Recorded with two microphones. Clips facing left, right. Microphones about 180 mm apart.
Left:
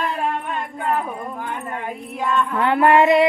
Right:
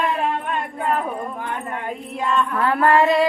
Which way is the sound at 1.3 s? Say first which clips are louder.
Even; centre (ahead or behind).